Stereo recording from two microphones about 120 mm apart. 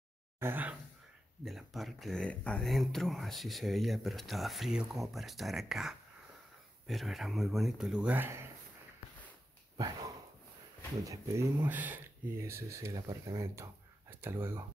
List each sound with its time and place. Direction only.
0.4 s speech: 15° right (ahead or behind)
1.4 s speech: centre (ahead or behind); by 8.5 s 20° right (ahead or behind)
11.1 s speech: 20° right (ahead or behind)